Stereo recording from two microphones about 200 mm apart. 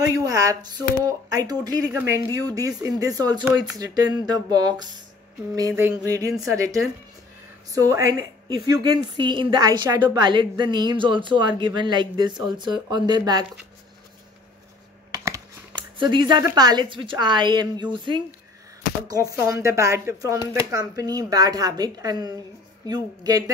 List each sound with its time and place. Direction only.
0.0 s a woman's voice: 15° right (ahead or behind)
15.0 s computer keyboard: 20° right (ahead or behind)
16.0 s a woman's voice: 25° right (ahead or behind)
19.0 s a woman's voice: 15° right (ahead or behind)